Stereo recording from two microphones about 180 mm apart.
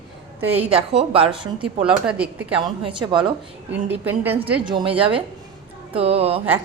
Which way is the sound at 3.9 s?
10° right (ahead or behind).